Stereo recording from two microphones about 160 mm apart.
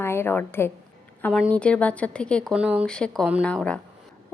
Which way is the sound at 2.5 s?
5° right (ahead or behind).